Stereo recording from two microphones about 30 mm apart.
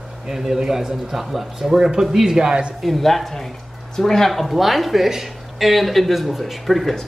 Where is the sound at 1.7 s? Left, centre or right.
Centre.